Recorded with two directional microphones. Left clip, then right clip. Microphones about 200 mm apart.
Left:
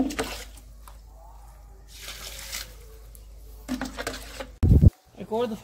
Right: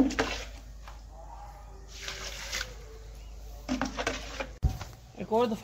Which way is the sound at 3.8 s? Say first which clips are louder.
Right 2 dB; 50° left (ahead or behind).